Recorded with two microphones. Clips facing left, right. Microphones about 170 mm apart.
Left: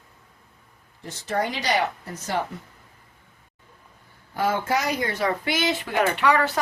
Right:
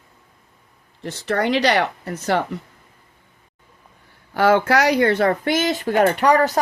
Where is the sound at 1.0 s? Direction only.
70° right (ahead or behind).